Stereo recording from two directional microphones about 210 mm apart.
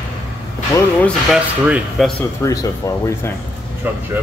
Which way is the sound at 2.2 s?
15° left (ahead or behind).